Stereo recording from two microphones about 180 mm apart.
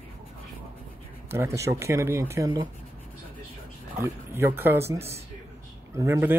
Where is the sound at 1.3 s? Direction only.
15° right (ahead or behind).